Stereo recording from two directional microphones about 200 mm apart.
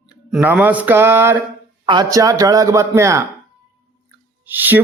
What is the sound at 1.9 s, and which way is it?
A man's voice, 20° right (ahead or behind).